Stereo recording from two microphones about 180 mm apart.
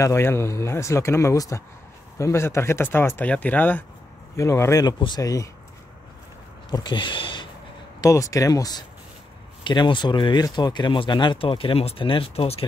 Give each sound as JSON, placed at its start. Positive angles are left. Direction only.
{"t": 0.0, "sound": "speech", "side_deg": 15}
{"t": 6.7, "sound": "speech", "side_deg": 25}